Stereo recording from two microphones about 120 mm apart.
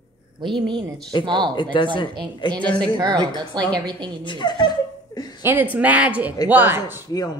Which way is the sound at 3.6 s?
10° left (ahead or behind).